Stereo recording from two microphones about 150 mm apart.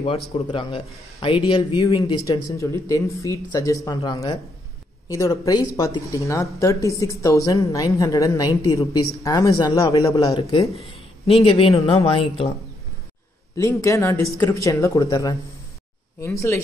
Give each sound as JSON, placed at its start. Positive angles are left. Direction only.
{"t": 0.0, "sound": "a man's voice", "side_deg": 35}
{"t": 2.5, "sound": "speech", "side_deg": 20}
{"t": 10.3, "sound": "a man's voice", "side_deg": 35}
{"t": 13.6, "sound": "speech", "side_deg": 20}